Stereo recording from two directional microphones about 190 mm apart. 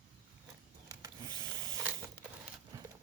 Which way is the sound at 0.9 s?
20° right (ahead or behind).